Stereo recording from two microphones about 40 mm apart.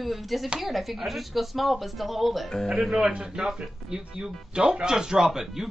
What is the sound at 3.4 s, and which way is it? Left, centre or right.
Speech, centre.